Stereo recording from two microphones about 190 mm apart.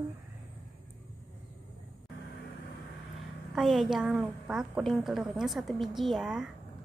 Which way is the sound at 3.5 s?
Centre (ahead or behind).